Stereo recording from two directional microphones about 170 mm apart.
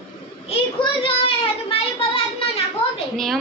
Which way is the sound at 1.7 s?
35° left (ahead or behind).